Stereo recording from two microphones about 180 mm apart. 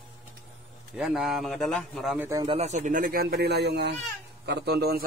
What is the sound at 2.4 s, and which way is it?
A man's voice, 35° right (ahead or behind).